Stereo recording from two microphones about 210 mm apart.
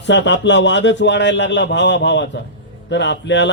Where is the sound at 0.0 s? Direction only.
55° left (ahead or behind).